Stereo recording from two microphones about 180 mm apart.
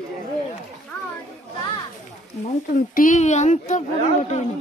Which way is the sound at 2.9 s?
45° left (ahead or behind).